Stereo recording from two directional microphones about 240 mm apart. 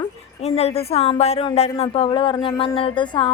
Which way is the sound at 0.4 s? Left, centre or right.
Left.